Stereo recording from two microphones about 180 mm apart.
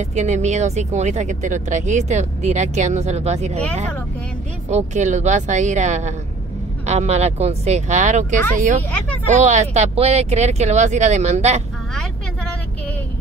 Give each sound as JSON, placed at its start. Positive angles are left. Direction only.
{"t": 0.0, "sound": "speech", "side_deg": -40}
{"t": 4.6, "sound": "speech", "side_deg": -40}